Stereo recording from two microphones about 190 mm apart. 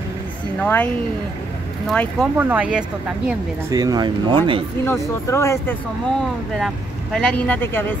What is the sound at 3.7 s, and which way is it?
Speech, 20° right (ahead or behind).